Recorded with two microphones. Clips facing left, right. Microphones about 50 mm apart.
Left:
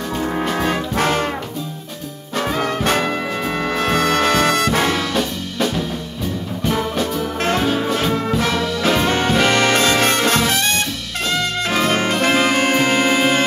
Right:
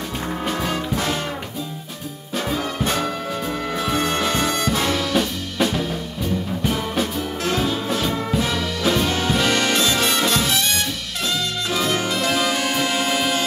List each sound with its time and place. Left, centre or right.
0.6 s brass instrument: left
2.3 s music: left
3.7 s brass instrument: left
5.1 s music: centre
7.4 s music: left
11.7 s music: left